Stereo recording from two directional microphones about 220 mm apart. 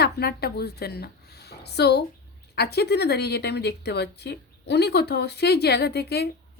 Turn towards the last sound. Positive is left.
turn(degrees=45)  # may be behind; listen again after turning